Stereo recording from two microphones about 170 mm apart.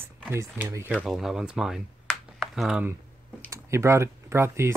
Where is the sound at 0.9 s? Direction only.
Centre (ahead or behind).